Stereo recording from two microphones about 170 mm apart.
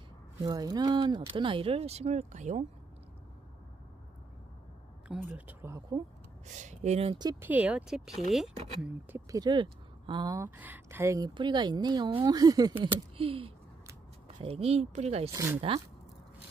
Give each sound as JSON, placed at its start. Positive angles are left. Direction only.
{"t": 0.4, "sound": "speech", "side_deg": -20}
{"t": 5.0, "sound": "speech", "side_deg": -10}
{"t": 6.4, "sound": "speech", "side_deg": -45}
{"t": 7.2, "sound": "speech", "side_deg": -20}
{"t": 7.4, "sound": "speech", "side_deg": -10}
{"t": 8.8, "sound": "speech", "side_deg": -10}
{"t": 9.4, "sound": "speech", "side_deg": -25}
{"t": 15.3, "sound": "speech", "side_deg": -15}